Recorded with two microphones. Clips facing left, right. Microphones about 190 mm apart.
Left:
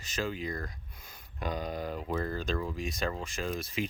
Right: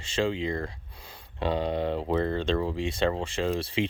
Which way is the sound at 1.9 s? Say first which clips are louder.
Right 7 dB; 90° right.